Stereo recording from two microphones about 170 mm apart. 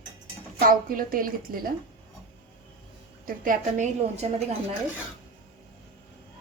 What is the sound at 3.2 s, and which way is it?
A woman's voice, 50° right (ahead or behind).